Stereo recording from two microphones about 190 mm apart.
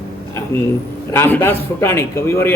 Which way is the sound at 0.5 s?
10° left (ahead or behind).